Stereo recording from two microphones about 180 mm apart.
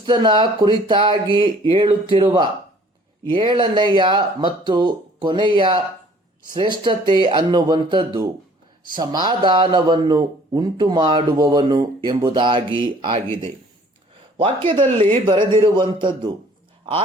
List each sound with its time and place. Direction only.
0.0 s speech: 25° right (ahead or behind)
14.7 s speech: 30° right (ahead or behind)